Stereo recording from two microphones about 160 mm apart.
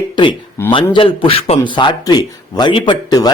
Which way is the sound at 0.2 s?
30° left (ahead or behind).